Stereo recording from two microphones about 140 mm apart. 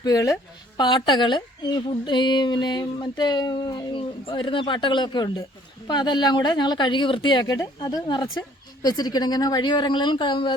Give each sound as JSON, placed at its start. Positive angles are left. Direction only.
{"t": 0.0, "sound": "a woman's voice", "side_deg": 25}